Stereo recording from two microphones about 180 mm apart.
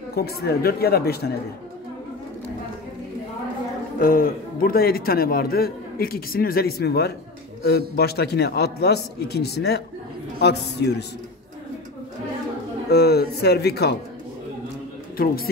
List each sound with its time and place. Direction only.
0.1 s a man's voice: 60° left (ahead or behind)
4.0 s a man's voice: 50° left (ahead or behind)
12.9 s a man's voice: 65° left (ahead or behind)
15.1 s a man's voice: 55° left (ahead or behind)